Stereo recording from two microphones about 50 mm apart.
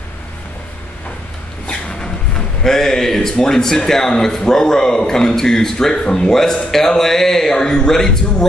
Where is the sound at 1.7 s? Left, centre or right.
Centre.